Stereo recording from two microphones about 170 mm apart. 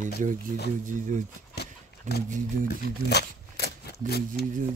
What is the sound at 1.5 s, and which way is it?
Horse, 70° left (ahead or behind).